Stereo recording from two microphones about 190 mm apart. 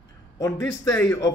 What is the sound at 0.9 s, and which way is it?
Speech, 15° left (ahead or behind).